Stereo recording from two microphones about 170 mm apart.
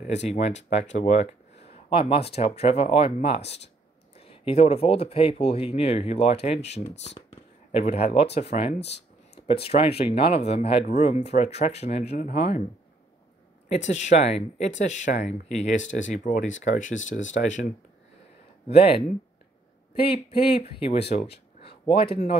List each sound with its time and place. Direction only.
0.0 s speech: 40° left (ahead or behind)
1.9 s speech: 30° left (ahead or behind)
3.3 s speech: 85° left
4.2 s speech: 35° left (ahead or behind)
13.7 s speech: 45° left (ahead or behind)
18.7 s speech: 35° left (ahead or behind)